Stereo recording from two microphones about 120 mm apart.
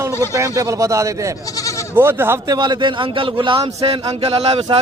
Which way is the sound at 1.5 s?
25° left (ahead or behind).